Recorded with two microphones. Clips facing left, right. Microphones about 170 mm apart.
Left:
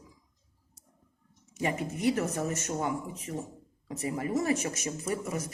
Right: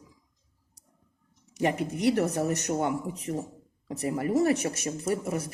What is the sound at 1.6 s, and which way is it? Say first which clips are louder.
Speech: right 4 dB; 70° right (ahead or behind).